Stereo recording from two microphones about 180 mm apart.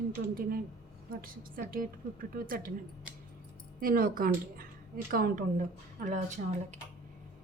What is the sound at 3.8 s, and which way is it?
A woman's voice, 55° right (ahead or behind).